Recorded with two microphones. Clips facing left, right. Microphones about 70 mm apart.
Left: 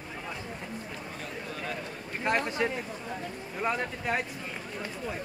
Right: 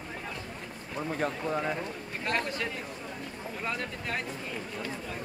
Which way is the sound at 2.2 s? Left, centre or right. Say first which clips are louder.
Left 4 dB; left.